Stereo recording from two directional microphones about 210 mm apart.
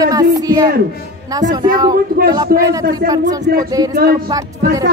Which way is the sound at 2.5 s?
45° right (ahead or behind).